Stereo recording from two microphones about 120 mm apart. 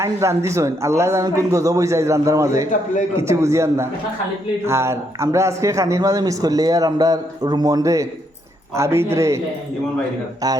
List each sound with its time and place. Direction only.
0.0 s speech: 25° right (ahead or behind)